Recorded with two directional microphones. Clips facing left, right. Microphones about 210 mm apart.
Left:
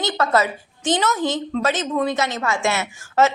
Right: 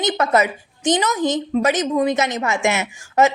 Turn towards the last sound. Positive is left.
turn(degrees=-15)  # may be behind; listen again after turning